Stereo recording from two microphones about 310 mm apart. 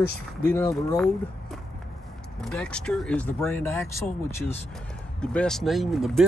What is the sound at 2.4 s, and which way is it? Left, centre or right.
Speech, centre.